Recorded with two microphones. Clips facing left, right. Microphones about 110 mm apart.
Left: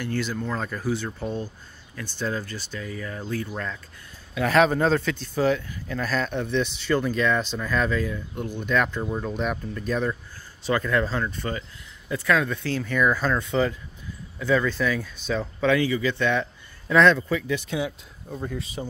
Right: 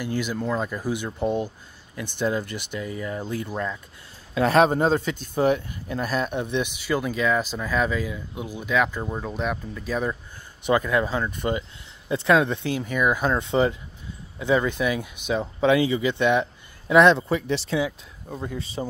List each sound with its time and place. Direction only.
0.0 s speech: 15° right (ahead or behind)
4.4 s speech: 25° right (ahead or behind)
13.3 s speech: 25° right (ahead or behind)
17.2 s speech: 30° right (ahead or behind)